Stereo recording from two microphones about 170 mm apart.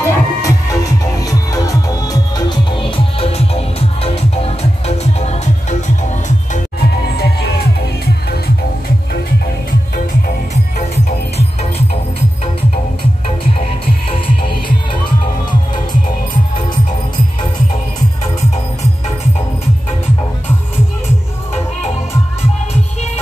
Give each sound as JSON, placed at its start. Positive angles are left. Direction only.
{"t": 0.0, "sound": "music", "side_deg": 15}
{"t": 6.8, "sound": "music", "side_deg": 70}
{"t": 14.1, "sound": "music", "side_deg": 30}